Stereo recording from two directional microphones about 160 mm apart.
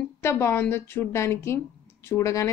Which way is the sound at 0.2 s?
15° left (ahead or behind).